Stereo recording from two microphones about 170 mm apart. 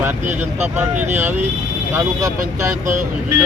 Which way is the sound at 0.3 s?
10° right (ahead or behind).